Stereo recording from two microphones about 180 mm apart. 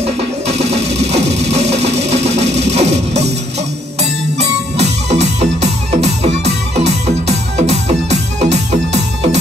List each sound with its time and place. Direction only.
0.0 s music: 35° right (ahead or behind)
4.0 s music: 35° right (ahead or behind)